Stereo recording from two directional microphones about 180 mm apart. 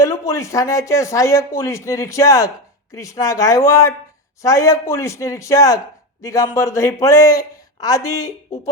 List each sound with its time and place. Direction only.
0.0 s speech: 15° left (ahead or behind)